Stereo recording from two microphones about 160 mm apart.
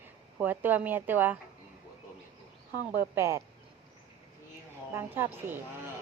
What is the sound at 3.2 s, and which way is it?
Speech, 15° right (ahead or behind).